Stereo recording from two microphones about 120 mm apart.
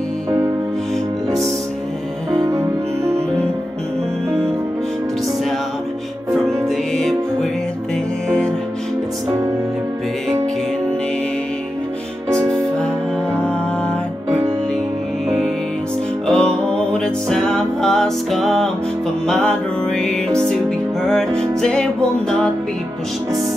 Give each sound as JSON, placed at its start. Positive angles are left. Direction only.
{"t": 2.3, "sound": "music", "side_deg": -25}
{"t": 8.3, "sound": "music", "side_deg": 10}
{"t": 12.7, "sound": "music", "side_deg": 10}
{"t": 15.2, "sound": "music", "side_deg": 5}